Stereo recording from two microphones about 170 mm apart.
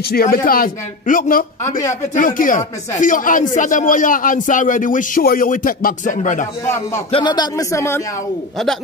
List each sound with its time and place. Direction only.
0.1 s a man's voice: 60° left (ahead or behind)
7.1 s a man's voice: 30° left (ahead or behind)